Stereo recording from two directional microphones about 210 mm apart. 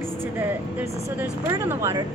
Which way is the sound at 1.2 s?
10° right (ahead or behind).